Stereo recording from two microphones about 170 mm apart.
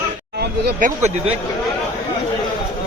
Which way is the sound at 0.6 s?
55° right (ahead or behind).